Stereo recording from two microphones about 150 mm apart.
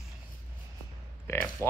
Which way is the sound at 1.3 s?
20° left (ahead or behind).